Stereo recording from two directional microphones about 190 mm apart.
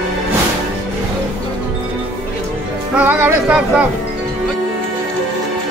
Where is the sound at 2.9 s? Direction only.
10° right (ahead or behind).